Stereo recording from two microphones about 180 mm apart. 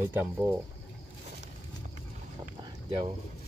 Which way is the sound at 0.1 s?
10° right (ahead or behind).